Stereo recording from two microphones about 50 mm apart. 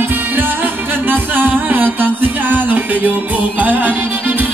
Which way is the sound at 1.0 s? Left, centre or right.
Right.